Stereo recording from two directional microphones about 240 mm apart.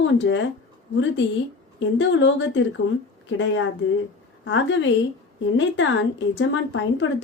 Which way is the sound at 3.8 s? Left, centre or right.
Left.